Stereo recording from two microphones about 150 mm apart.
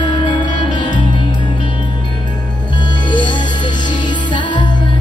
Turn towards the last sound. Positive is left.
turn(degrees=30)  # may be behind; listen again after turning